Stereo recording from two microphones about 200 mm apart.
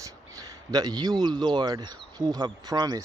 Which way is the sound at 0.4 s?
20° right (ahead or behind).